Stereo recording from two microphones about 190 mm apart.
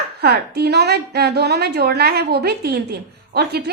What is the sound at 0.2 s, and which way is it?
A woman's voice, 55° right (ahead or behind).